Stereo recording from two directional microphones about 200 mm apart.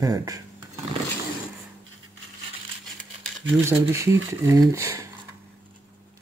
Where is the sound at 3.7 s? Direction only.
15° right (ahead or behind).